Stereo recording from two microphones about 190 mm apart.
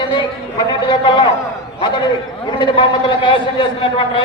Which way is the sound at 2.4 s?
25° left (ahead or behind).